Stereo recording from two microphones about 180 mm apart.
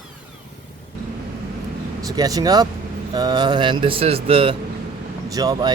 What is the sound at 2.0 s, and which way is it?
Speech, 20° right (ahead or behind).